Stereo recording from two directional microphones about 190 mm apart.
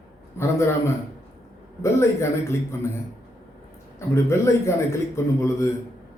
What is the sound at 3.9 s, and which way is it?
A man's voice, 15° left (ahead or behind).